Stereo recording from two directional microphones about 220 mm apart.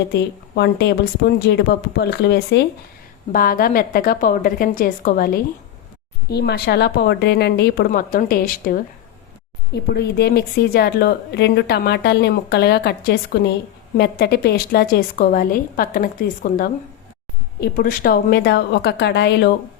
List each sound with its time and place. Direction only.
0.1 s a woman's voice: 50° left (ahead or behind)